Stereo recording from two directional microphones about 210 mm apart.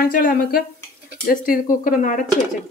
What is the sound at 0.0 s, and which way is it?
Speech, 45° left (ahead or behind).